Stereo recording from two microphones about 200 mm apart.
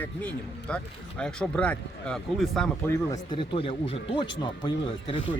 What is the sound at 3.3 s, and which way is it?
Speech, 25° left (ahead or behind).